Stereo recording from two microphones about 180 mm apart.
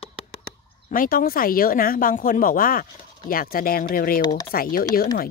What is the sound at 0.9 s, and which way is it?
Speech, 50° left (ahead or behind).